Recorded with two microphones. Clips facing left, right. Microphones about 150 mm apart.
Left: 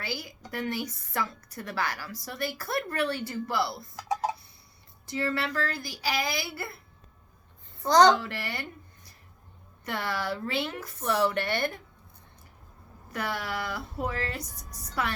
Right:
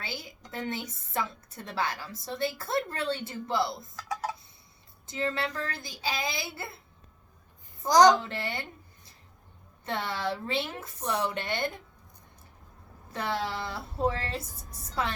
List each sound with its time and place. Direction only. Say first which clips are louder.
0.0 s a woman's voice: left 4 dB; 25° right (ahead or behind)
3.9 s a sound: left 8 dB; 20° left (ahead or behind)
5.0 s a woman's voice: left 1 dB; 20° right (ahead or behind)
7.8 s a woman's voice: even; 15° right (ahead or behind)
9.8 s a woman's voice: even; 25° right (ahead or behind)
13.1 s a woman's voice: right 1 dB; 25° right (ahead or behind)